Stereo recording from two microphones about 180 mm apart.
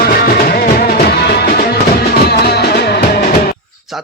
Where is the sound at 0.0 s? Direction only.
60° left (ahead or behind).